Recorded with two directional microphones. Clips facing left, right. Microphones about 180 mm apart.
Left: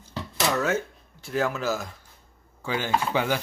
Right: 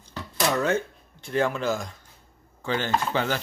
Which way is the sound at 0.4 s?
5° left (ahead or behind).